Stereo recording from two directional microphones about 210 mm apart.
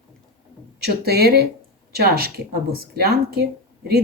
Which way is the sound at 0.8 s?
50° right (ahead or behind).